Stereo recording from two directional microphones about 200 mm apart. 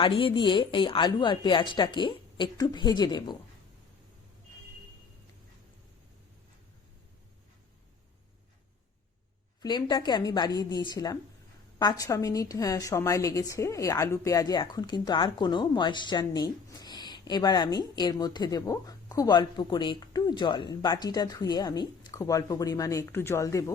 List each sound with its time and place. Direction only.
0.0 s a woman's voice: 25° left (ahead or behind)
9.6 s a woman's voice: 20° left (ahead or behind)